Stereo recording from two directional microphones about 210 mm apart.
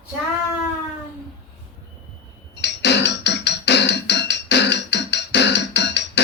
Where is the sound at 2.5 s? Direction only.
55° left (ahead or behind).